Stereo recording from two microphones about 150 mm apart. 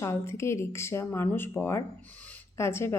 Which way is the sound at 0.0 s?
20° left (ahead or behind).